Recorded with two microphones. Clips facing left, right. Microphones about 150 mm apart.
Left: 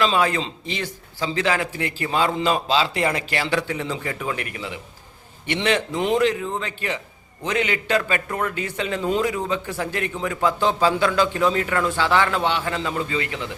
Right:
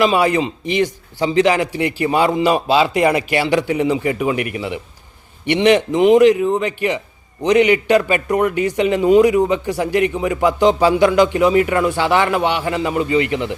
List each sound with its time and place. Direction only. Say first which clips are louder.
0.0 s a man's voice: right 6 dB; 15° right (ahead or behind)